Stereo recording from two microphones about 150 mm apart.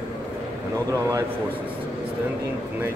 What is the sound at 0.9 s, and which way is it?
Speech, 25° right (ahead or behind).